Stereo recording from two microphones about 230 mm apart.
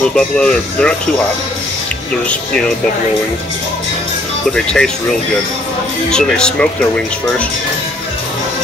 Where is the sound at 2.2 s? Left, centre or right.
Centre.